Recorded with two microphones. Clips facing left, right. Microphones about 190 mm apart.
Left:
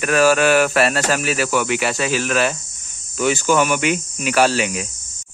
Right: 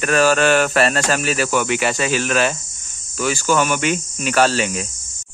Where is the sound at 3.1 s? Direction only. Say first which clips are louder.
Left 2 dB; 20° left (ahead or behind).